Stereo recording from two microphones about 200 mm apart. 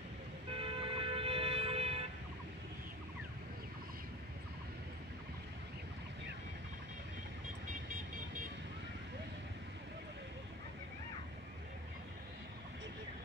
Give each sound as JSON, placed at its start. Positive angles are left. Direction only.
{"t": 0.5, "sound": "toot", "side_deg": -25}